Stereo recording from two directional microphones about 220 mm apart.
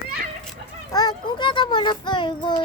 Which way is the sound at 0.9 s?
15° left (ahead or behind).